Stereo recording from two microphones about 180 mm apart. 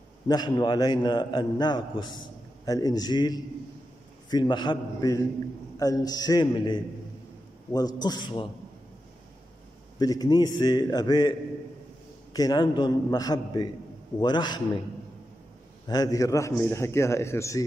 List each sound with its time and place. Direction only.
0.3 s a man's voice: 25° left (ahead or behind)
9.9 s a man's voice: 20° left (ahead or behind)
15.9 s a man's voice: 20° left (ahead or behind)